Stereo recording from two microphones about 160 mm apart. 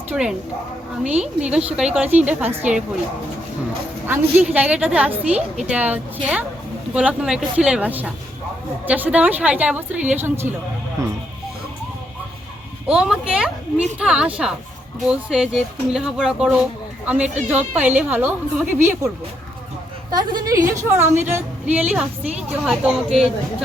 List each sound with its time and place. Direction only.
0.1 s a woman's voice: 5° right (ahead or behind)
4.0 s a woman's voice: 10° right (ahead or behind)
12.9 s speech: 5° right (ahead or behind)
17.7 s a woman's voice: 10° right (ahead or behind)